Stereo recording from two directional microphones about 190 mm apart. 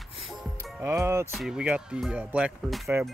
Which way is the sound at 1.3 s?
Centre (ahead or behind).